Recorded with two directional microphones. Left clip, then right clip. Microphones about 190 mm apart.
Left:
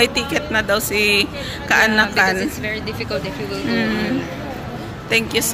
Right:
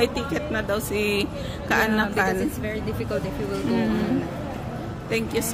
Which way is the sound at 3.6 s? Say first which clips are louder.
Left 5 dB; 10° right (ahead or behind).